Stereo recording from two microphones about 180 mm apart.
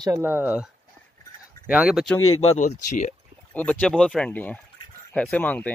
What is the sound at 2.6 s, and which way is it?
Speech, 45° left (ahead or behind).